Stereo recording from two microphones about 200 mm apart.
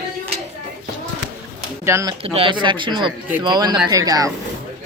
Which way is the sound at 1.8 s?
15° right (ahead or behind).